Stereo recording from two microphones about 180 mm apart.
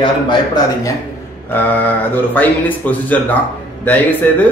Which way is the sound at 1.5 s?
10° left (ahead or behind).